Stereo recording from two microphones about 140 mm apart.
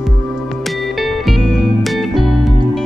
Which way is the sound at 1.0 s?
Centre (ahead or behind).